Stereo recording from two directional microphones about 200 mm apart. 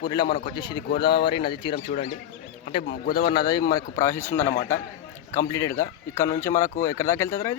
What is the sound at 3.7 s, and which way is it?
Speech, 15° left (ahead or behind).